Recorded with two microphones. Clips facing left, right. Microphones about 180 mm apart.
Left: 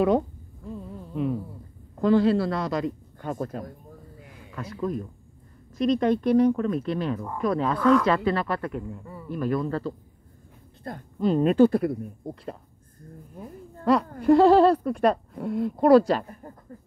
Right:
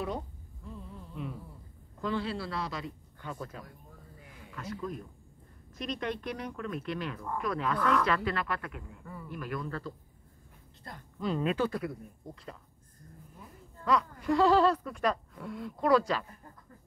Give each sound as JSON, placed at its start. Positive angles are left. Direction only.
{"t": 1.1, "sound": "a sound", "side_deg": 55}
{"t": 2.0, "sound": "a man's voice", "side_deg": 40}
{"t": 5.8, "sound": "speech", "side_deg": 35}
{"t": 10.8, "sound": "a woman's voice", "side_deg": 50}
{"t": 13.4, "sound": "a man's voice", "side_deg": 55}